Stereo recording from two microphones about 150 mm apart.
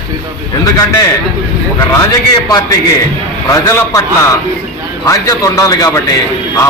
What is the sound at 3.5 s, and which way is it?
A man's voice, 20° left (ahead or behind).